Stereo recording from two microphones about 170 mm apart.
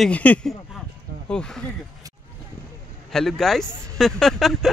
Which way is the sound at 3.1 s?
Centre (ahead or behind).